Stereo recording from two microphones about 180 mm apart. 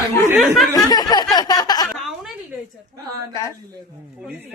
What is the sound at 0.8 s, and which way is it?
Speech, 20° left (ahead or behind).